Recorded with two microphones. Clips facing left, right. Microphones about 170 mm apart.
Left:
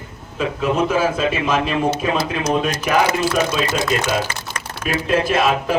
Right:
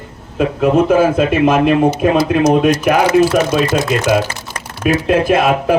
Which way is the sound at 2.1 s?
40° right (ahead or behind).